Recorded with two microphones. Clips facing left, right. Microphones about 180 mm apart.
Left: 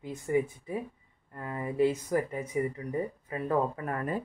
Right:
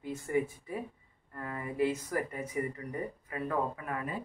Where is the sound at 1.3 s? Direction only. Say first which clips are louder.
Left 4 dB; 25° left (ahead or behind).